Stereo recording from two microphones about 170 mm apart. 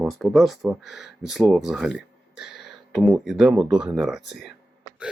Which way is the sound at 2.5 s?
90° left.